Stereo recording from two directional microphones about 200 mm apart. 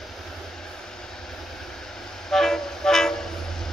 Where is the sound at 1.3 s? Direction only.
Centre (ahead or behind).